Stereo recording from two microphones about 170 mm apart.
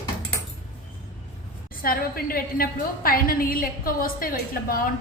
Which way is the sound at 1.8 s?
60° left (ahead or behind).